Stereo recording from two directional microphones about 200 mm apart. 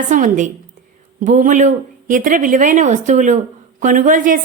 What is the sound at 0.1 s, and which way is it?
A woman's voice, 40° right (ahead or behind).